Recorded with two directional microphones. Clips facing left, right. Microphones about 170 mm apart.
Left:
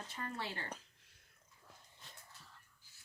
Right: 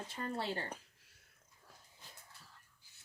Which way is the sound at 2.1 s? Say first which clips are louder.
Even; centre (ahead or behind).